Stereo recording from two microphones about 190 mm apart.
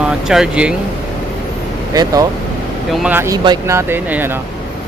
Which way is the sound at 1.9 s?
20° right (ahead or behind).